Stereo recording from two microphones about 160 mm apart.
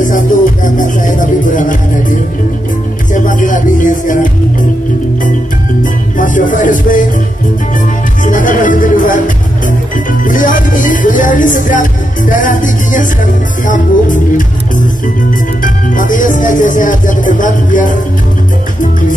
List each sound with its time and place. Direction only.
0.7 s music: 55° left (ahead or behind)
6.1 s speech: 55° left (ahead or behind)
8.2 s music: 55° left (ahead or behind)
10.2 s music: 55° left (ahead or behind)
15.6 s music: 55° left (ahead or behind)